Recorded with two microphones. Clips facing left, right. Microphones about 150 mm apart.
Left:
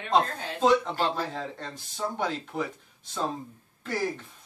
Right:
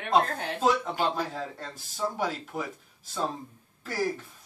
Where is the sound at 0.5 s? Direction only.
10° right (ahead or behind).